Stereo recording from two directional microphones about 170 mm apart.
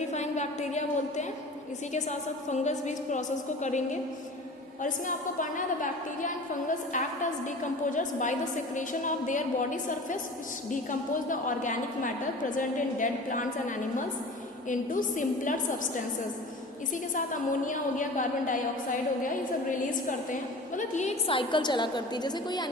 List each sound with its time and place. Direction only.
0.1 s a woman's voice: 45° left (ahead or behind)
7.4 s a woman's voice: 50° left (ahead or behind); by 22.7 s 25° left (ahead or behind)